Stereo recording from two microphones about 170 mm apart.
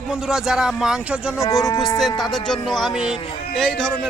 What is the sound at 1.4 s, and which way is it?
Speech, 20° left (ahead or behind).